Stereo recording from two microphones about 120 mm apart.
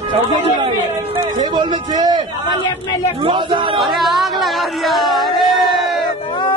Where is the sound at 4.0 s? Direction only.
Centre (ahead or behind).